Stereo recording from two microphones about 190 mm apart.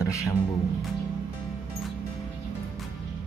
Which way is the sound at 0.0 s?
15° left (ahead or behind).